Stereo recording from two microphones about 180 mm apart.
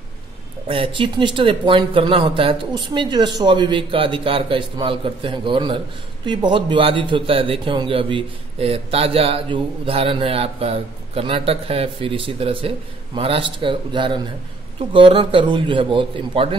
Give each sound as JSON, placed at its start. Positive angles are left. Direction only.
{"t": 0.7, "sound": "a man's voice", "side_deg": -30}